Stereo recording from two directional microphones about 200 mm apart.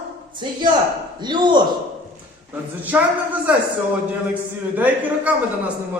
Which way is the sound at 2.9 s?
10° right (ahead or behind).